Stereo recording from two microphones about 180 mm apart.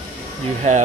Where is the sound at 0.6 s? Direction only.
40° right (ahead or behind).